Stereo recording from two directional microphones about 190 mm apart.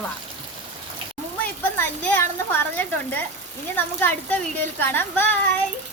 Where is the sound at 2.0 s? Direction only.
10° left (ahead or behind).